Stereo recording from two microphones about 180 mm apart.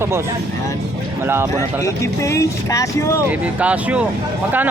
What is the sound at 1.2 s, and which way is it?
Speech, 10° right (ahead or behind).